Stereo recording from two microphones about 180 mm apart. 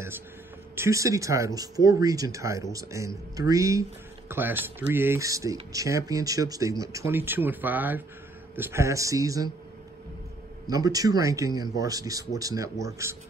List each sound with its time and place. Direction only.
0.7 s speech: 15° right (ahead or behind)
10.7 s speech: 20° right (ahead or behind)